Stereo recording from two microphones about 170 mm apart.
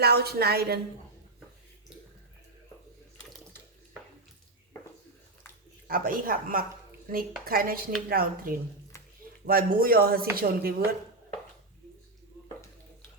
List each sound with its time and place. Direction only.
0.0 s speech: 70° right (ahead or behind)
5.9 s speech: 55° right (ahead or behind)